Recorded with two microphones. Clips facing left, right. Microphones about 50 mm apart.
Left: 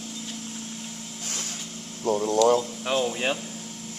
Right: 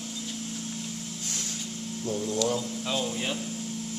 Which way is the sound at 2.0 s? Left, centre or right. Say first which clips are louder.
Left 7 dB; left.